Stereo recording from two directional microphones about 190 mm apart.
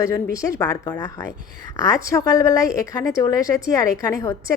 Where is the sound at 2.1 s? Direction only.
20° left (ahead or behind).